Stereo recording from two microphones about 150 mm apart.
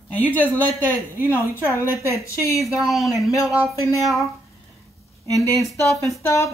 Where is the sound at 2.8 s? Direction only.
Centre (ahead or behind).